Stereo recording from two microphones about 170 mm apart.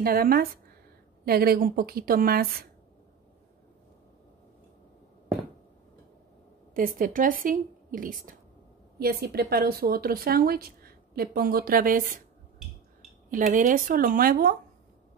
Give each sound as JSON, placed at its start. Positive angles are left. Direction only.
{"t": 0.0, "sound": "speech", "side_deg": -60}
{"t": 7.0, "sound": "a woman's voice", "side_deg": -50}
{"t": 8.9, "sound": "speech", "side_deg": -65}
{"t": 13.3, "sound": "speech", "side_deg": -50}